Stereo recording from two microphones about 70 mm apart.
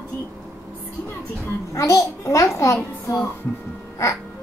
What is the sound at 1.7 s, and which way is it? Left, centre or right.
A child's voice, left.